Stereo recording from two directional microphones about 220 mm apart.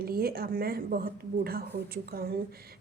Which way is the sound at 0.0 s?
45° right (ahead or behind).